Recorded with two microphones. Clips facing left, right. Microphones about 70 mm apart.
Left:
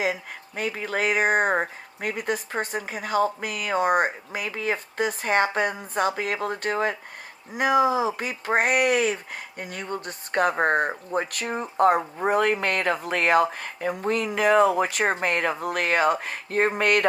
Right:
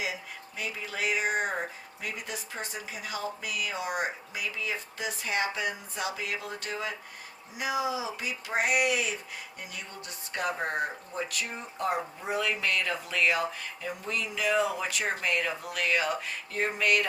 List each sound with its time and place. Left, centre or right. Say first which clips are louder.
0.0 s speech: left 8 dB; left